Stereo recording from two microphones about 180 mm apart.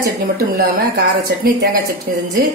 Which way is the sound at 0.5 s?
55° right (ahead or behind).